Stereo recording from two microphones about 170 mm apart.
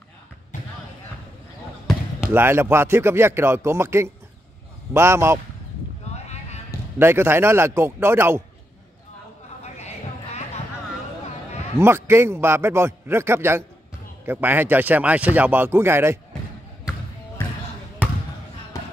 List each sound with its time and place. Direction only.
2.1 s speech: 15° right (ahead or behind)
6.2 s basketball bounce: 40° left (ahead or behind)
7.0 s speech: 15° right (ahead or behind)
9.6 s a sound: 40° left (ahead or behind)
11.8 s speech: 15° right (ahead or behind)